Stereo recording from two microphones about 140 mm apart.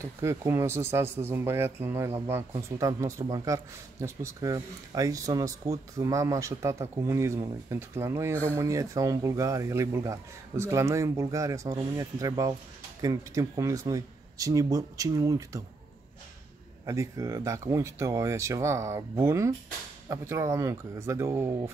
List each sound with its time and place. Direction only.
0.0 s speech: 20° right (ahead or behind)
16.8 s speech: 25° right (ahead or behind)